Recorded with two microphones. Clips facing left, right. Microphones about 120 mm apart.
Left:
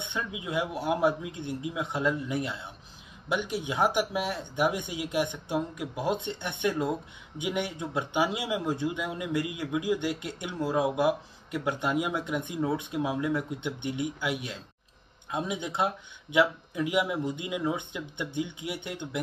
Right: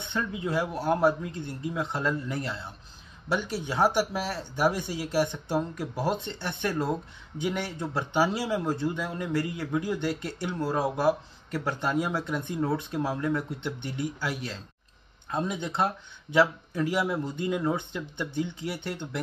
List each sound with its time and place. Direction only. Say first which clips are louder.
0.1 s speech: right 4 dB; 10° left (ahead or behind)